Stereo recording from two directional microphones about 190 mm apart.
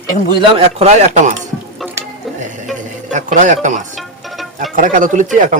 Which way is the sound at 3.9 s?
Centre (ahead or behind).